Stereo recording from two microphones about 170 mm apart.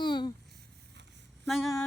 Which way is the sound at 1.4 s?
Centre (ahead or behind).